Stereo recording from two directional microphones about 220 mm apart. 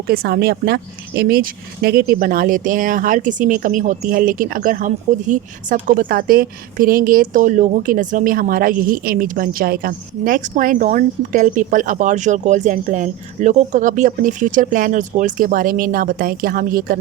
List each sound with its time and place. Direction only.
0.1 s a woman's voice: 45° right (ahead or behind)